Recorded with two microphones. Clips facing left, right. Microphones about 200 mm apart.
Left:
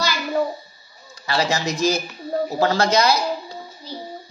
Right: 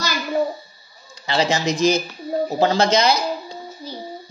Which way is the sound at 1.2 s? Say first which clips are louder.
Right 2 dB; 20° right (ahead or behind).